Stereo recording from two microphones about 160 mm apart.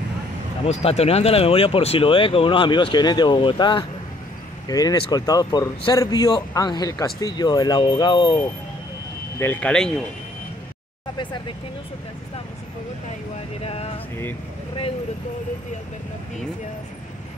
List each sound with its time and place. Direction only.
0.7 s speech: 40° left (ahead or behind)
9.4 s speech: 10° left (ahead or behind)
13.6 s speech: 40° left (ahead or behind)